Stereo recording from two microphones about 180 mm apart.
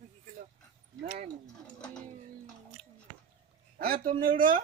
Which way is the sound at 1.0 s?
45° right (ahead or behind).